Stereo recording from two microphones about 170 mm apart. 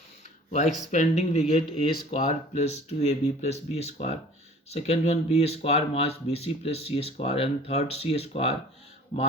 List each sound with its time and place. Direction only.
0.9 s speech: 45° left (ahead or behind)